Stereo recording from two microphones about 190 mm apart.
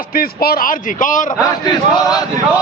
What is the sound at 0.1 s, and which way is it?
A man's voice, 50° left (ahead or behind).